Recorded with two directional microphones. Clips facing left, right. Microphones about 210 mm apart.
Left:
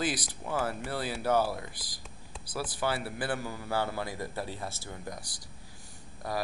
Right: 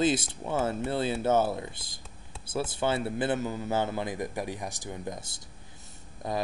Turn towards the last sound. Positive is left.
turn(degrees=-20)  # may be behind; listen again after turning